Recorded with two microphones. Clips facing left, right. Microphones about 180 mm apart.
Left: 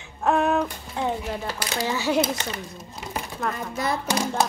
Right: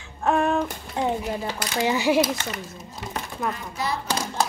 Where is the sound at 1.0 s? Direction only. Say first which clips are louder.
Right 2 dB; 20° right (ahead or behind).